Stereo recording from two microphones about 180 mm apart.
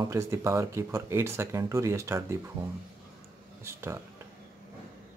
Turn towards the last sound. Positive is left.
turn(degrees=-15)  # may be behind; listen again after turning